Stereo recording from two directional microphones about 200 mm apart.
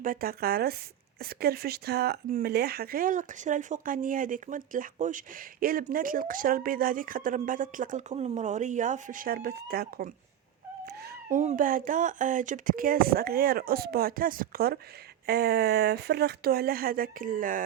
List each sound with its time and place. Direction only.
0.0 s speech: 45° right (ahead or behind)
10.8 s cat: 55° right (ahead or behind)
11.3 s speech: 40° right (ahead or behind)